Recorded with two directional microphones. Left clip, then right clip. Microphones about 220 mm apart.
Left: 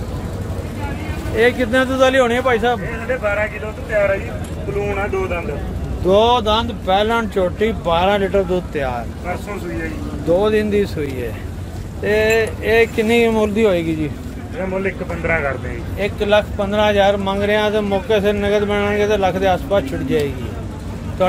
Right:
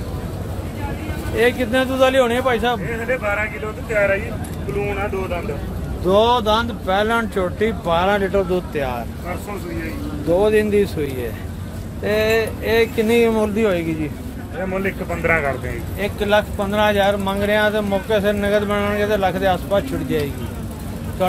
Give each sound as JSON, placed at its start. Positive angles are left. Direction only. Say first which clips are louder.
{"t": 1.3, "sound": "speech", "louder": "left 2 dB", "side_deg": 0}
{"t": 6.0, "sound": "speech", "louder": "left 2 dB", "side_deg": 5}
{"t": 10.3, "sound": "speech", "louder": "even", "side_deg": 0}
{"t": 15.2, "sound": "speech", "louder": "right 1 dB", "side_deg": -25}
{"t": 16.0, "sound": "speech", "louder": "left 2 dB", "side_deg": 5}